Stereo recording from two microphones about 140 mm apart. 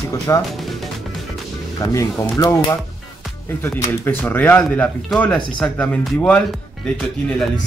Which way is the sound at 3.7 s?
20° left (ahead or behind).